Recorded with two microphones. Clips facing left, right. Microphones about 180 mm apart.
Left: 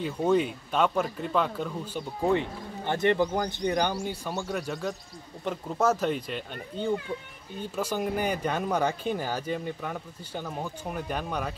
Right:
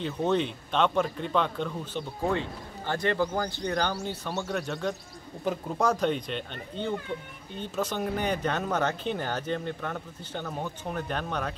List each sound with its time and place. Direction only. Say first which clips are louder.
0.0 s speech: left 2 dB; 10° left (ahead or behind)
2.9 s speech: left 3 dB; 20° left (ahead or behind)